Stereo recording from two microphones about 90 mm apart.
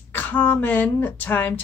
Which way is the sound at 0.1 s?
20° left (ahead or behind).